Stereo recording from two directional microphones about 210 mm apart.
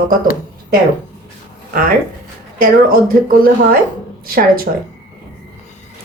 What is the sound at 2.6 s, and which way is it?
A woman's voice, 40° right (ahead or behind).